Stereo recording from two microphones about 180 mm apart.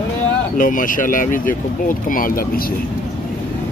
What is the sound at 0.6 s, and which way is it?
Speech, 50° left (ahead or behind).